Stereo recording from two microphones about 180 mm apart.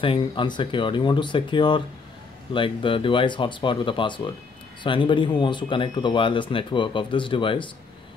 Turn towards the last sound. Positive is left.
turn(degrees=25)  # may be behind; listen again after turning